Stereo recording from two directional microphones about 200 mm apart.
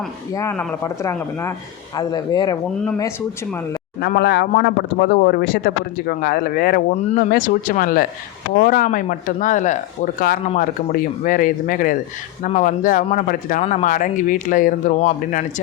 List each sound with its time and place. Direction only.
0.3 s speech: 10° left (ahead or behind)
4.0 s speech: 55° left (ahead or behind)